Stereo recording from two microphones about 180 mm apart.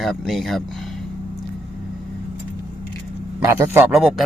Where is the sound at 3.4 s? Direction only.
15° right (ahead or behind).